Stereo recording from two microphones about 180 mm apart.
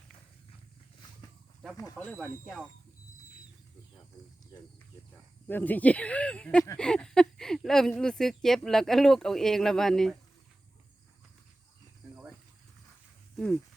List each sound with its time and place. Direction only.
1.7 s speech: 20° left (ahead or behind)
2.0 s speech: 5° left (ahead or behind)
5.5 s speech: 10° left (ahead or behind)
13.3 s speech: 5° left (ahead or behind)